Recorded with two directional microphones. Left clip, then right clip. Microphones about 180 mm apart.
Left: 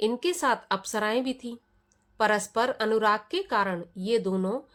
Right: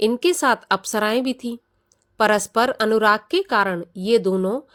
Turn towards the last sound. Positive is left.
turn(degrees=-40)  # may be behind; listen again after turning